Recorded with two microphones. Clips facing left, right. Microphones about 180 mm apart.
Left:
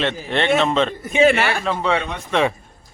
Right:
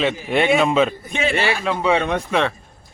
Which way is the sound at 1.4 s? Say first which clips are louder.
Even; 55° left (ahead or behind).